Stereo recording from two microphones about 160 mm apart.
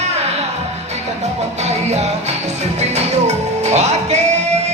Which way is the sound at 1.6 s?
45° right (ahead or behind).